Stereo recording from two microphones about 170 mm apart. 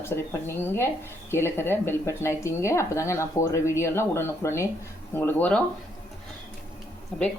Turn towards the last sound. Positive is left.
turn(degrees=5)  # may be behind; listen again after turning